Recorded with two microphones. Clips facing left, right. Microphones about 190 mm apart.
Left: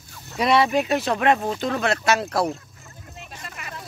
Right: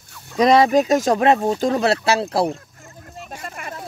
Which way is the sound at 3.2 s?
45° right (ahead or behind).